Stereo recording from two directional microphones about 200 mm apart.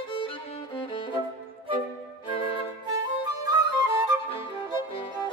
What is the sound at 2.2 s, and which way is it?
Music, 25° left (ahead or behind).